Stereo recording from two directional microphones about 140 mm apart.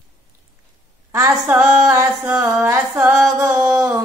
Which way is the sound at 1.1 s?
20° right (ahead or behind).